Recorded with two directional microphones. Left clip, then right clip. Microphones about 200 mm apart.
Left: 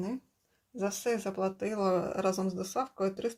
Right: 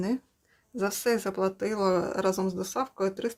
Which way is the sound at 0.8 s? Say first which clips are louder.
Right 5 dB; 30° right (ahead or behind).